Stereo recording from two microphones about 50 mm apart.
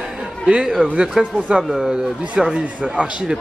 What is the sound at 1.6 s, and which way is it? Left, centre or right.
Speech, centre.